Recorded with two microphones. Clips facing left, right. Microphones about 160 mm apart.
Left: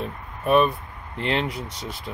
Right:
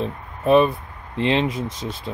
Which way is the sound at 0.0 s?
25° right (ahead or behind).